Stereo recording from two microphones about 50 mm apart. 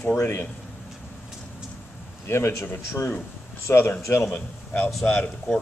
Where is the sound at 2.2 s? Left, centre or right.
Left.